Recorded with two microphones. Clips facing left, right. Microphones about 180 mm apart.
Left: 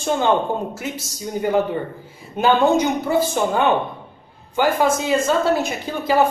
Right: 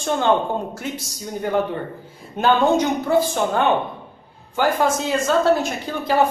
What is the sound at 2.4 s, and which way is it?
Speech, centre (ahead or behind).